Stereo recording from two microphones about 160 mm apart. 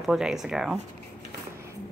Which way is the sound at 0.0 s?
Centre (ahead or behind).